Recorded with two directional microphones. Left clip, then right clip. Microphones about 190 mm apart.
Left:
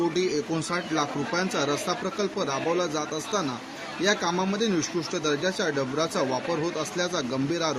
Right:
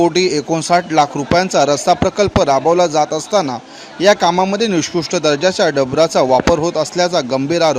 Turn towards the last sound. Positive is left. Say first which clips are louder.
# right 13 dB
turn(degrees=-45)  # may be behind; listen again after turning